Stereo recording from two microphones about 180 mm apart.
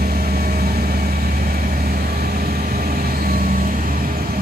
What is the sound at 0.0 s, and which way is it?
Vehicle, 55° right (ahead or behind).